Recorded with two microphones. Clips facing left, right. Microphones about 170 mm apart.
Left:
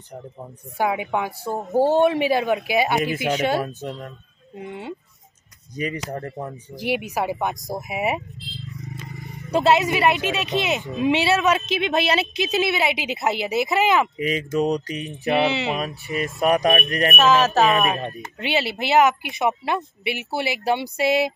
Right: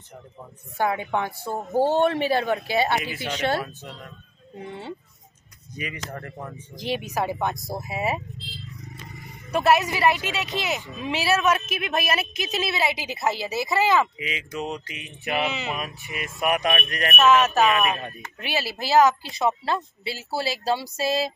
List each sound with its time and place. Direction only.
0.7 s speech: 10° left (ahead or behind)
3.6 s speech: 40° left (ahead or behind)
5.8 s speech: 35° left (ahead or behind)
6.7 s speech: 10° left (ahead or behind)
9.2 s speech: 20° left (ahead or behind)
14.1 s speech: 45° left (ahead or behind)
17.9 s speech: 20° left (ahead or behind)